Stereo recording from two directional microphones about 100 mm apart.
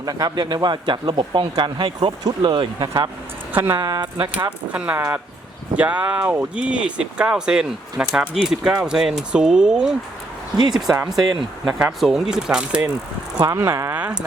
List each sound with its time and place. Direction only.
0.0 s speech: 40° right (ahead or behind)
3.5 s speech: 20° right (ahead or behind)
3.8 s speech: 40° right (ahead or behind)
4.7 s speech: 15° right (ahead or behind)
13.4 s speech: 40° right (ahead or behind)
13.9 s speech: 10° right (ahead or behind)